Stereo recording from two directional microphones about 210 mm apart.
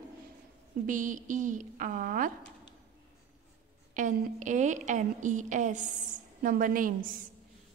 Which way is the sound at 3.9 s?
35° right (ahead or behind).